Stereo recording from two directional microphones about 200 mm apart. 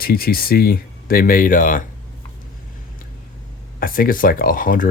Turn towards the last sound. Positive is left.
turn(degrees=45)  # may be behind; listen again after turning